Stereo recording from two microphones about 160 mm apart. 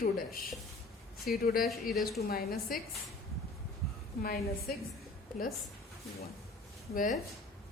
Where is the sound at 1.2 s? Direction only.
70° left (ahead or behind).